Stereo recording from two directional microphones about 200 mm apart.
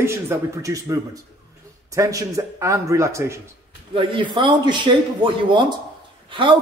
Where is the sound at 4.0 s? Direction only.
25° right (ahead or behind).